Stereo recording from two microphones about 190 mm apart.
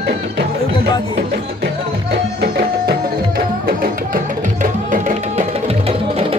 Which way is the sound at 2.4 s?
55° right (ahead or behind).